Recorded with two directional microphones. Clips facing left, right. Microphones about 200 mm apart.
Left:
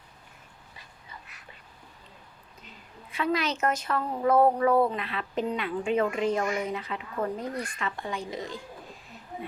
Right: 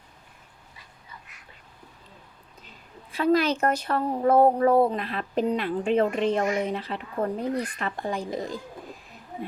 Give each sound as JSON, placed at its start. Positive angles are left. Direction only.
{"t": 3.2, "sound": "speech", "side_deg": -35}